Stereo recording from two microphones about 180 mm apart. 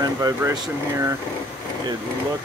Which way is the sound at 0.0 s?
20° right (ahead or behind).